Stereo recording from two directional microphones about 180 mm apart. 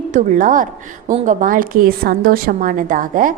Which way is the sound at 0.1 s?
45° right (ahead or behind).